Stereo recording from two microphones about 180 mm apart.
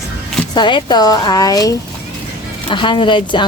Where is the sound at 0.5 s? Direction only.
25° left (ahead or behind).